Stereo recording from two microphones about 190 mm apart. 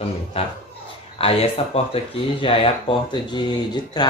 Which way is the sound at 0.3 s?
30° left (ahead or behind).